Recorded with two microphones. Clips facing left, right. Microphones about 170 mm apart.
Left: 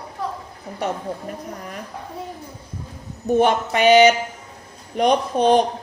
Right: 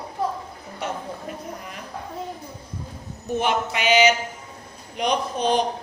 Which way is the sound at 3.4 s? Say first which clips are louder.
Left 4 dB; 50° left (ahead or behind).